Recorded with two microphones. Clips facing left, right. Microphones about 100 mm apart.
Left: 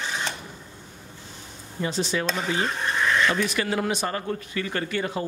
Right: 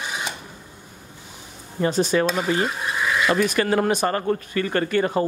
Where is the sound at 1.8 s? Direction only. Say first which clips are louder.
Right 7 dB; 50° right (ahead or behind).